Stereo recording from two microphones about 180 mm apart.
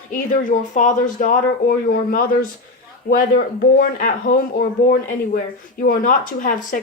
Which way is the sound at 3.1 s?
55° left (ahead or behind).